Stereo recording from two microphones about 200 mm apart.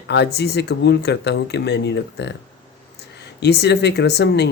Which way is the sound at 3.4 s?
55° left (ahead or behind).